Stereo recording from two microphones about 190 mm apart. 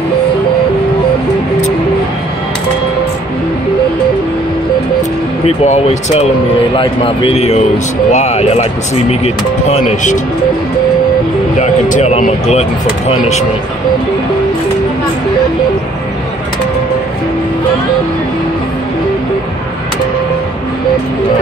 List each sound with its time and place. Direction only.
5.7 s a man's voice: 35° left (ahead or behind)
11.6 s speech: 35° left (ahead or behind)